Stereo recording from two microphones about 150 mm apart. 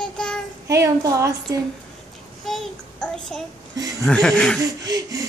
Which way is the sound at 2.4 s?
5° left (ahead or behind).